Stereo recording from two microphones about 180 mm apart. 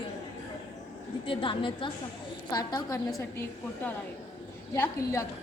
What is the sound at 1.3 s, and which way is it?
Speech, 30° left (ahead or behind).